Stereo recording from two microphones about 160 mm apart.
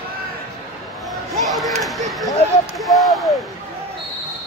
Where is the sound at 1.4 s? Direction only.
Centre (ahead or behind).